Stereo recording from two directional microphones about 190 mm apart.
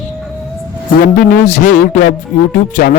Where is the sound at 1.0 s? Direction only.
50° left (ahead or behind).